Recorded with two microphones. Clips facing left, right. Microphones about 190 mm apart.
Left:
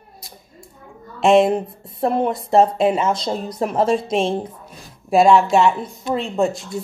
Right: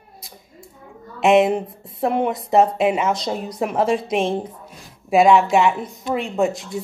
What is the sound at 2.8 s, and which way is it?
Speech, 15° right (ahead or behind).